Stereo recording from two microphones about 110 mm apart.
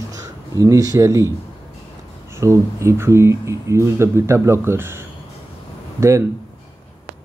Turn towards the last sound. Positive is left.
turn(degrees=-25)  # may be behind; listen again after turning